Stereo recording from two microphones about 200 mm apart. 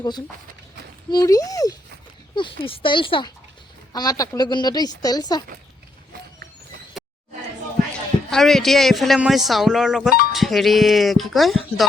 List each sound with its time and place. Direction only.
1.1 s speech: 20° left (ahead or behind)
8.3 s a man's voice: centre (ahead or behind)